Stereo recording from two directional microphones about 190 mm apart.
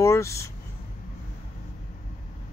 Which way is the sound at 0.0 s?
15° left (ahead or behind).